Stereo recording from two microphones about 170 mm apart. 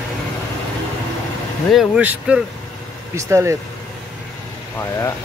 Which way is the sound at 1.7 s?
5° right (ahead or behind).